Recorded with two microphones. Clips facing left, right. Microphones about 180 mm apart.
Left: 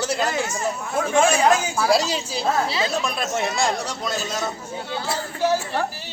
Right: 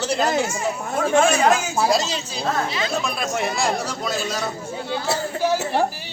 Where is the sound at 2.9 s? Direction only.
Centre (ahead or behind).